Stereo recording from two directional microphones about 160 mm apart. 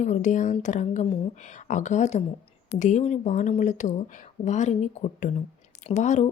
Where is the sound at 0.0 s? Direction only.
50° left (ahead or behind).